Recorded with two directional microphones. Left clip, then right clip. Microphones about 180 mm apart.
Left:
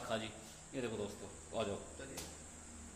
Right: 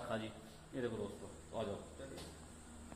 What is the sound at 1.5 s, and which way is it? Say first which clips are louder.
Speech: left 3 dB; 25° left (ahead or behind).